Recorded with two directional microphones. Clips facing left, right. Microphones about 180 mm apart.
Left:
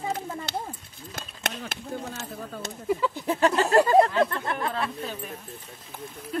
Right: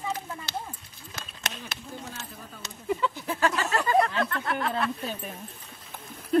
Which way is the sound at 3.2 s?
30° left (ahead or behind).